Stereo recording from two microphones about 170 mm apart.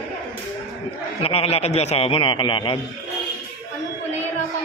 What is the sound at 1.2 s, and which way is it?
A man's voice, 35° left (ahead or behind).